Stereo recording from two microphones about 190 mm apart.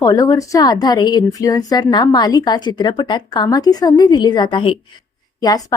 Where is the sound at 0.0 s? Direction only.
15° left (ahead or behind).